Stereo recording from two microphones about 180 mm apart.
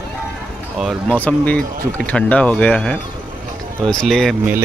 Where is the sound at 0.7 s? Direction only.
Centre (ahead or behind).